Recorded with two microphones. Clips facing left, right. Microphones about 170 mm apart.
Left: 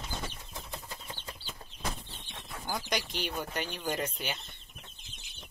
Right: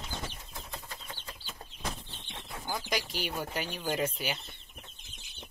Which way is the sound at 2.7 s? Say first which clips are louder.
Even; centre (ahead or behind).